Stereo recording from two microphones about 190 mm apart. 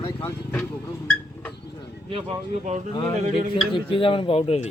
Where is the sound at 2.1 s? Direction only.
30° right (ahead or behind).